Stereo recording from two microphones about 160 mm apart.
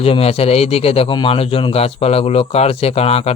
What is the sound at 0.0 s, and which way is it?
Speech, 40° left (ahead or behind).